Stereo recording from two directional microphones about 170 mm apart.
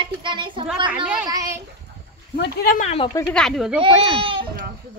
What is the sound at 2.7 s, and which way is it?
Speech, 40° left (ahead or behind).